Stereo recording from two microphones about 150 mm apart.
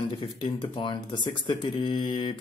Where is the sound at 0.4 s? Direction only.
35° left (ahead or behind).